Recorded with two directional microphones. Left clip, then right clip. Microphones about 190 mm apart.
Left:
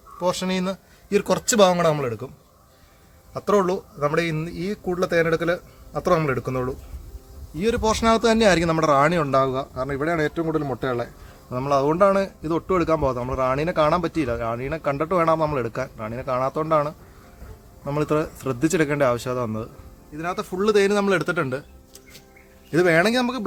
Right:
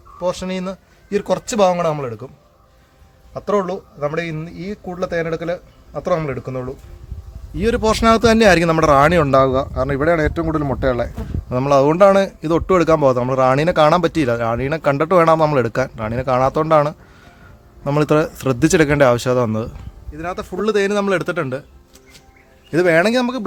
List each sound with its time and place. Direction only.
0.2 s speech: 5° left (ahead or behind)
3.3 s speech: 15° left (ahead or behind)
7.6 s speech: 30° right (ahead or behind); by 19.7 s 50° right (ahead or behind)
20.1 s speech: 20° right (ahead or behind)
22.7 s speech: 35° right (ahead or behind)